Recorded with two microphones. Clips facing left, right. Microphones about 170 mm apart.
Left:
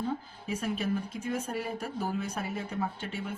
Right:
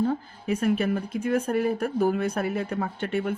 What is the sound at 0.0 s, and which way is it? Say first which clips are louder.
A woman's voice: right 8 dB; 60° right (ahead or behind).